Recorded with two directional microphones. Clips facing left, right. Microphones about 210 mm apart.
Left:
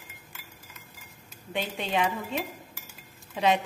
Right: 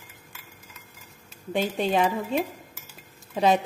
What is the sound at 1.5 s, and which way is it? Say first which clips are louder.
Speech: right 6 dB; 40° right (ahead or behind).